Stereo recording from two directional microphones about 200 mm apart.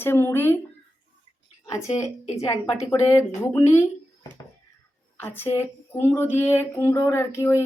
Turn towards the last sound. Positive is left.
turn(degrees=15)  # may be behind; listen again after turning